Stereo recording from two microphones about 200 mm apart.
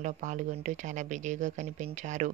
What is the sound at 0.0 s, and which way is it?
Speech, 40° right (ahead or behind).